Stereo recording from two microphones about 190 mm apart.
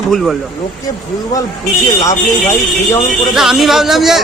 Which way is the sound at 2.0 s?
15° left (ahead or behind).